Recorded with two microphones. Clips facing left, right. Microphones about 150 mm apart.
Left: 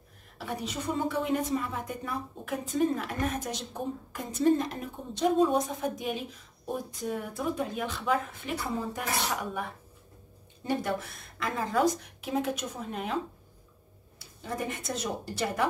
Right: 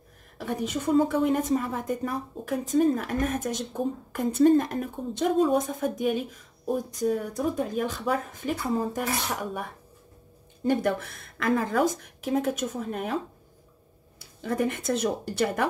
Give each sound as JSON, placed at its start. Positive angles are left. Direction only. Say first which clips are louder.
{"t": 0.4, "sound": "a woman's voice", "louder": "right 5 dB", "side_deg": -50}
{"t": 10.7, "sound": "a woman's voice", "louder": "right 5 dB", "side_deg": -55}
{"t": 14.4, "sound": "speech", "louder": "right 7 dB", "side_deg": -60}